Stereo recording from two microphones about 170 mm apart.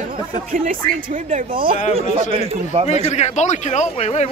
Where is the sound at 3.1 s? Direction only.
40° left (ahead or behind).